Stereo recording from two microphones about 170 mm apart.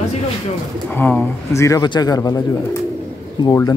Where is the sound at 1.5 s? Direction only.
20° left (ahead or behind).